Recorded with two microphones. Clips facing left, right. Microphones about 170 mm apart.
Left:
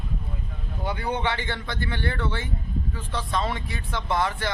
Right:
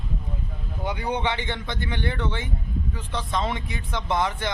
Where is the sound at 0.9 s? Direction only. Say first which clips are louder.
Right 1 dB; 15° right (ahead or behind).